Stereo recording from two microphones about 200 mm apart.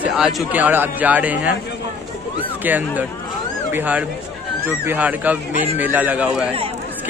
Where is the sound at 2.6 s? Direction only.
10° right (ahead or behind).